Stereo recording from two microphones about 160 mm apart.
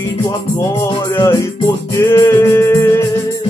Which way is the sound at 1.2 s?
25° left (ahead or behind).